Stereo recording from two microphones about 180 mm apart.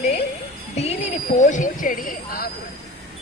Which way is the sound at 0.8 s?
35° left (ahead or behind).